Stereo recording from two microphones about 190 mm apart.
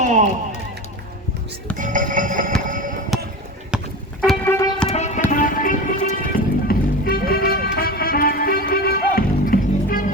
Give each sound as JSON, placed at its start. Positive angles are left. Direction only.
{"t": 0.0, "sound": "speech", "side_deg": -40}
{"t": 1.8, "sound": "a sound", "side_deg": -45}
{"t": 3.1, "sound": "music", "side_deg": 0}
{"t": 4.4, "sound": "music", "side_deg": 15}
{"t": 4.9, "sound": "music", "side_deg": 35}